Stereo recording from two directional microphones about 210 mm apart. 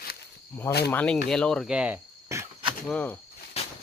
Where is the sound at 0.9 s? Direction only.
5° left (ahead or behind); by 2.5 s 10° right (ahead or behind).